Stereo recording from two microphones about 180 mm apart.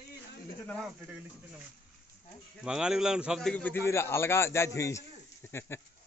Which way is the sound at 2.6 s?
5° right (ahead or behind).